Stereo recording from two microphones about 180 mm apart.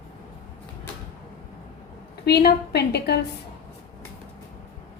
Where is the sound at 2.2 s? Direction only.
65° left (ahead or behind).